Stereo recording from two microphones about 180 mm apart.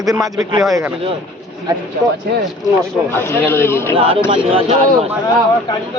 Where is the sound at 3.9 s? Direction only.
30° right (ahead or behind).